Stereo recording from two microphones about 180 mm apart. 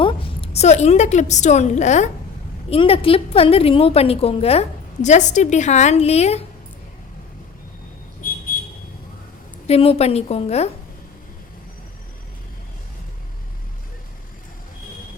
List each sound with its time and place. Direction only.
0.0 s a woman's voice: 30° left (ahead or behind)
8.2 s vehicle: 50° left (ahead or behind)
9.6 s a woman's voice: 35° left (ahead or behind)